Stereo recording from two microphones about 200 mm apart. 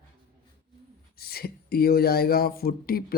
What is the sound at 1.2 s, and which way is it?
Speech, 50° left (ahead or behind).